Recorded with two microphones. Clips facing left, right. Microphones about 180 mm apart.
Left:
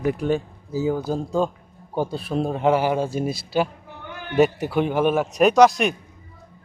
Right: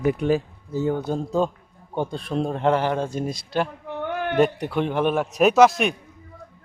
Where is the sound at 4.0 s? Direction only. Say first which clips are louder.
Right 9 dB; 65° right (ahead or behind).